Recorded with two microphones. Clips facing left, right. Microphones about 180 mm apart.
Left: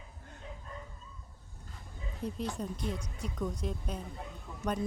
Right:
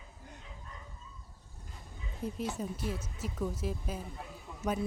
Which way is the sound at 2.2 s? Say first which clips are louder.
Even; 5° right (ahead or behind).